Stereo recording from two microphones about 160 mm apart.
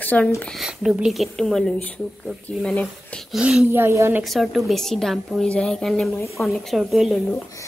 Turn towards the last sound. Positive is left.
turn(degrees=0)  # may be behind; listen again after turning